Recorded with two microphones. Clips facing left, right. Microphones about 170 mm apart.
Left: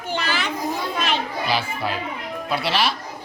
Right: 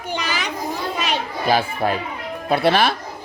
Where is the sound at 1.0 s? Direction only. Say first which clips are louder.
Right 6 dB; 50° right (ahead or behind).